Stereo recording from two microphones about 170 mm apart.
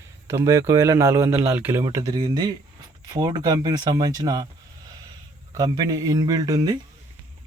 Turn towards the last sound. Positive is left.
turn(degrees=-20)  # may be behind; listen again after turning